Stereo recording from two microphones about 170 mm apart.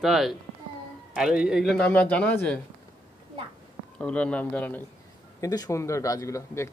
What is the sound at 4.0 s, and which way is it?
Speech, 5° left (ahead or behind).